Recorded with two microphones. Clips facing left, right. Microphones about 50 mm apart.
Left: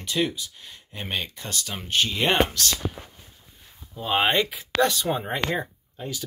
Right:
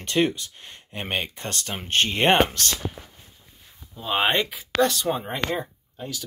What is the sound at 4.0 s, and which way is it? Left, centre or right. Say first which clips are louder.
Speech: left 1 dB; centre.